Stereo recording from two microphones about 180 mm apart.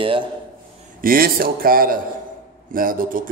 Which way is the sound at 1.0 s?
55° right (ahead or behind).